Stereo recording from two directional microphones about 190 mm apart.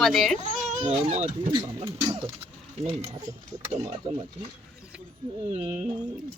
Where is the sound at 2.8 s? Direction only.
30° right (ahead or behind).